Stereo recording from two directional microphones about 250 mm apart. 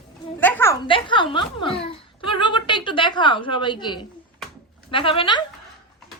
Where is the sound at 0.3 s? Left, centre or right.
Centre.